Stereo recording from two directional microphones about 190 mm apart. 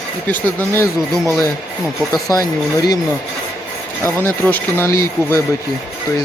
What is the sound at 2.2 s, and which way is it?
Speech, 20° left (ahead or behind).